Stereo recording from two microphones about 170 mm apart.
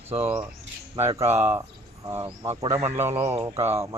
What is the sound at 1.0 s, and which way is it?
Speech, 15° right (ahead or behind).